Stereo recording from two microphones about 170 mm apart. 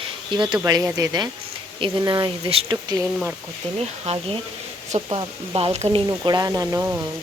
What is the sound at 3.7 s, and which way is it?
A woman's voice, 35° right (ahead or behind).